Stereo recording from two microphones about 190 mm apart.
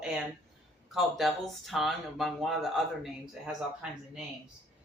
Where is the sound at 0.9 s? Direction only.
Centre (ahead or behind).